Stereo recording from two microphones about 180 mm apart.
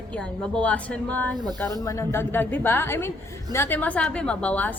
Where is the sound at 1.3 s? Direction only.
25° right (ahead or behind).